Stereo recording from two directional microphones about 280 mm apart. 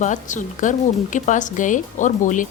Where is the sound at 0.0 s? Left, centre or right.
Left.